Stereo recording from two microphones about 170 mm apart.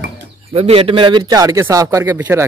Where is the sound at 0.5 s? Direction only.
35° right (ahead or behind); by 2.4 s 10° right (ahead or behind).